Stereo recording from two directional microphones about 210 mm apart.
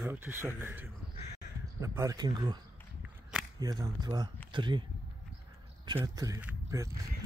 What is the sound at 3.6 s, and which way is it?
Speech, 15° right (ahead or behind).